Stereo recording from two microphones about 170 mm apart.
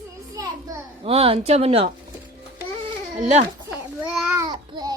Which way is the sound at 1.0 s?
35° right (ahead or behind).